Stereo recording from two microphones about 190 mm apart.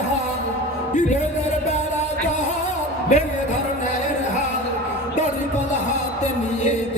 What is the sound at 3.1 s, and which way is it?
Speech, 40° left (ahead or behind).